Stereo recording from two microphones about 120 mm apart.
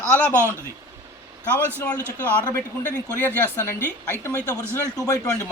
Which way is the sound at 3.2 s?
20° left (ahead or behind).